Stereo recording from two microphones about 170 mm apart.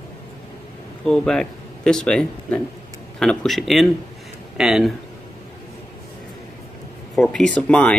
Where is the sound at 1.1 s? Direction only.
5° left (ahead or behind).